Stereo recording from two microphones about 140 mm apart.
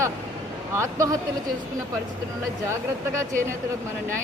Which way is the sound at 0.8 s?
20° right (ahead or behind).